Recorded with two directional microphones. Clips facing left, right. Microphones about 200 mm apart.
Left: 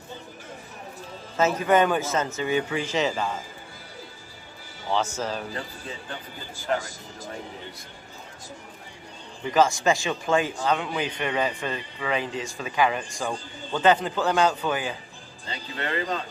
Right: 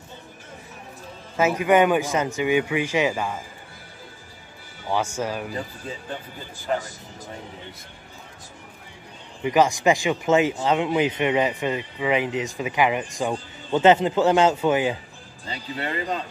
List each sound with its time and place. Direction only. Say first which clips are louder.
1.3 s a man's voice: right 2 dB; 10° right (ahead or behind)
4.9 s a man's voice: right 2 dB; 10° right (ahead or behind)
9.4 s a man's voice: right 2 dB; 15° right (ahead or behind)